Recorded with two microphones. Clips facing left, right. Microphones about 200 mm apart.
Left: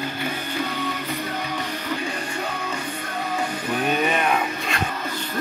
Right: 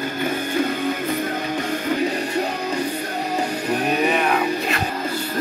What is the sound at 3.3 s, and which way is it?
Music, 35° right (ahead or behind).